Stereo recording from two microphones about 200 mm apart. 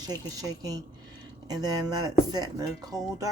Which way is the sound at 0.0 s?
20° right (ahead or behind).